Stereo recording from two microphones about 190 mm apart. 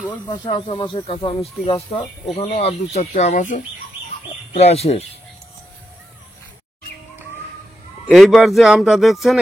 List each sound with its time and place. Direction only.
0.3 s speech: 25° left (ahead or behind)
8.1 s speech: centre (ahead or behind)